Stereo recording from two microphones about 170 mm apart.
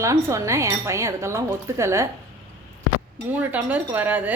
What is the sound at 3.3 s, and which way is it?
A woman's voice, 10° right (ahead or behind).